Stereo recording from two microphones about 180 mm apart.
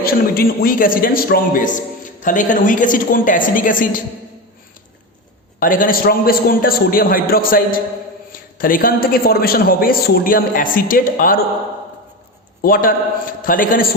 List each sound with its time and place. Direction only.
0.0 s a man's voice: 55° left (ahead or behind)
5.5 s a man's voice: 50° left (ahead or behind)
12.6 s a man's voice: 50° left (ahead or behind)